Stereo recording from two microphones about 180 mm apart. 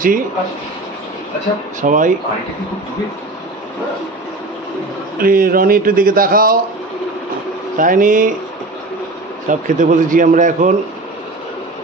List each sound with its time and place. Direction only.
1.8 s a man's voice: 45° right (ahead or behind)
5.2 s a man's voice: 55° right (ahead or behind)
7.7 s a man's voice: 45° right (ahead or behind)
9.5 s a man's voice: 45° right (ahead or behind)